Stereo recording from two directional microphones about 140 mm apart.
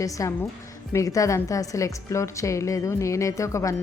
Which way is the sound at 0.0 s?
25° left (ahead or behind).